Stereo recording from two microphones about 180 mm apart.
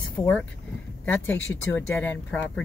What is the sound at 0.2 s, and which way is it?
Speech, 10° left (ahead or behind).